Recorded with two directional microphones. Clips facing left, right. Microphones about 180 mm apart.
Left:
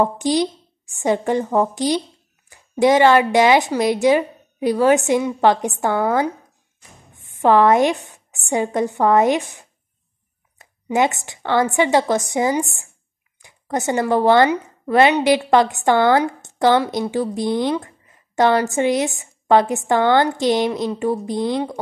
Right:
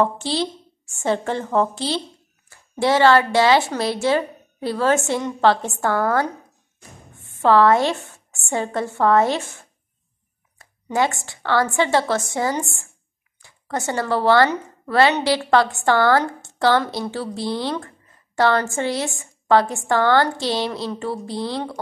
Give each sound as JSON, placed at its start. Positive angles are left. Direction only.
{"t": 0.0, "sound": "a woman's voice", "side_deg": 15}